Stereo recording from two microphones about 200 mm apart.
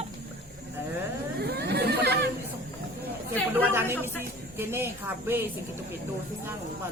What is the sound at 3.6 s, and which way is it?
Speech, 10° right (ahead or behind).